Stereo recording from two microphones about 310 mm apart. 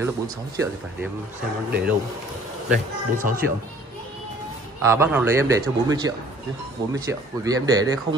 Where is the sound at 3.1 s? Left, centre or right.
Right.